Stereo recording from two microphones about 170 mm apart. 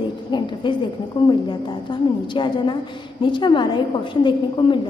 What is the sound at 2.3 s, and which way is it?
A woman's voice, 25° left (ahead or behind).